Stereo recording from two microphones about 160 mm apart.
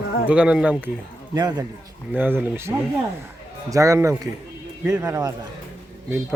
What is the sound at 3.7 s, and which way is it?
Speech, 20° right (ahead or behind).